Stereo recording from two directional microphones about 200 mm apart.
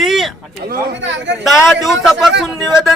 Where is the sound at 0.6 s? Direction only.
55° right (ahead or behind).